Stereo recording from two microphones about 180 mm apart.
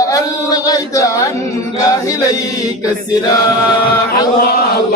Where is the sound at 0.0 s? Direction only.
20° left (ahead or behind).